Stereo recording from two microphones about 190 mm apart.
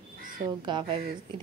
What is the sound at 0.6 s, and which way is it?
Speech, 25° right (ahead or behind).